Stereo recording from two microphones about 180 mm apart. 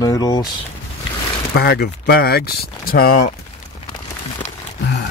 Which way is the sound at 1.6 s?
60° left (ahead or behind).